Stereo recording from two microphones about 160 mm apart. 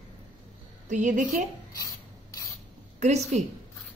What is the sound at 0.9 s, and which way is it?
Speech, 50° right (ahead or behind).